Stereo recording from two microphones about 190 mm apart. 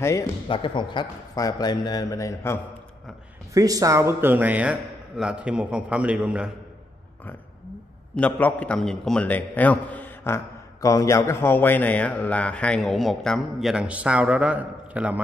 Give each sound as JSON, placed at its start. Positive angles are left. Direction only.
{"t": 0.0, "sound": "a man's voice", "side_deg": 15}
{"t": 3.5, "sound": "a man's voice", "side_deg": -20}
{"t": 8.2, "sound": "a man's voice", "side_deg": 10}